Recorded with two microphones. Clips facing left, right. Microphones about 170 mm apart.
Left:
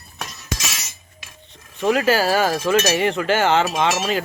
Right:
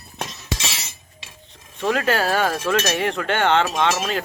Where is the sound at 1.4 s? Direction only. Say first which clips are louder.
Left 3 dB; centre (ahead or behind).